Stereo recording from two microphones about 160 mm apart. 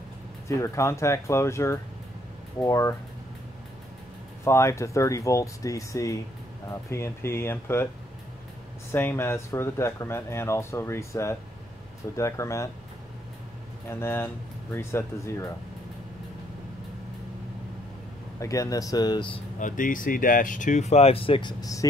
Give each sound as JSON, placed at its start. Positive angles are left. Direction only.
{"t": 0.5, "sound": "speech", "side_deg": 20}
{"t": 4.5, "sound": "speech", "side_deg": 20}
{"t": 8.9, "sound": "speech", "side_deg": 15}
{"t": 13.8, "sound": "speech", "side_deg": 15}
{"t": 18.4, "sound": "speech", "side_deg": 20}
{"t": 19.6, "sound": "speech", "side_deg": 55}